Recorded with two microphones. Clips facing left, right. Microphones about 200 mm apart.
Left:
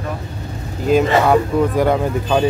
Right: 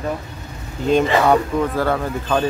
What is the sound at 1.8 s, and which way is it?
Speech, 15° left (ahead or behind).